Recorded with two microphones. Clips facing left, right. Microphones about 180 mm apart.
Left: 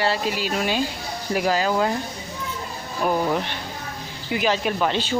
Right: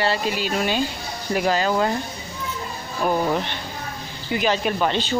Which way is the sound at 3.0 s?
Centre (ahead or behind).